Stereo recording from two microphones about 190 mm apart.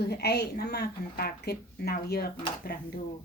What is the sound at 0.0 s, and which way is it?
Speech, 55° left (ahead or behind).